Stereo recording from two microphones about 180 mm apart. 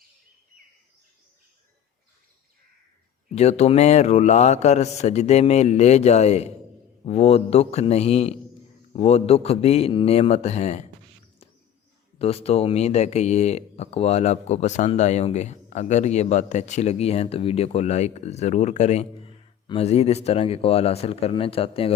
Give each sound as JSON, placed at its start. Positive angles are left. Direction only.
{"t": 3.2, "sound": "speech", "side_deg": 35}
{"t": 12.2, "sound": "speech", "side_deg": 35}